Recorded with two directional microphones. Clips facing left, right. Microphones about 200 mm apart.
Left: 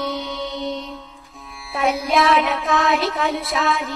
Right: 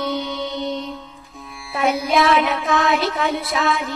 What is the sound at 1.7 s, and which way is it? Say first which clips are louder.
Child singing: right 1 dB; centre (ahead or behind).